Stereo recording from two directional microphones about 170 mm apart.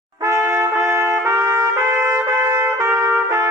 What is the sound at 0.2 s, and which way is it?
Trumpet, 15° right (ahead or behind).